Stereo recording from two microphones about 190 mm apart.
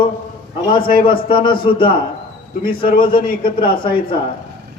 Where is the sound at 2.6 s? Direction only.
50° left (ahead or behind).